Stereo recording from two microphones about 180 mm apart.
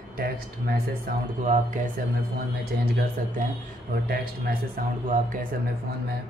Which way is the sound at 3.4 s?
45° right (ahead or behind).